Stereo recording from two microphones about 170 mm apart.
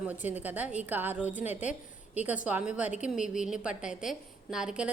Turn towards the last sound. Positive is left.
turn(degrees=-5)  # may be behind; listen again after turning